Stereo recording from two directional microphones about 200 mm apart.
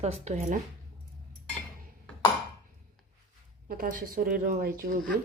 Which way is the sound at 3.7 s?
45° right (ahead or behind).